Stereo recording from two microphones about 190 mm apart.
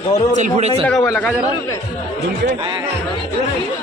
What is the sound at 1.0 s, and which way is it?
Speech, 15° left (ahead or behind).